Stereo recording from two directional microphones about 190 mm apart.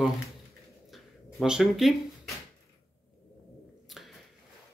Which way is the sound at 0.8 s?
Centre (ahead or behind).